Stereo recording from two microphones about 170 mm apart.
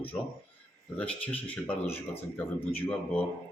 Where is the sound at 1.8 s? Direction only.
35° left (ahead or behind).